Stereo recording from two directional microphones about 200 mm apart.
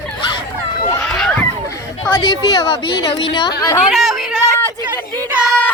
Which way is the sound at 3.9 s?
Centre (ahead or behind).